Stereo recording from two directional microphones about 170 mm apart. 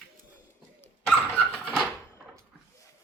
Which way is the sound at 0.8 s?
10° left (ahead or behind).